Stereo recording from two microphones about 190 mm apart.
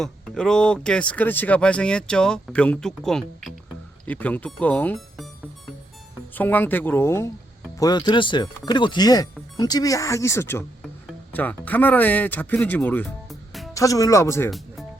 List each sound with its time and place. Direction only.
0.0 s speech: centre (ahead or behind)
6.3 s speech: 10° left (ahead or behind)
13.7 s speech: 15° left (ahead or behind)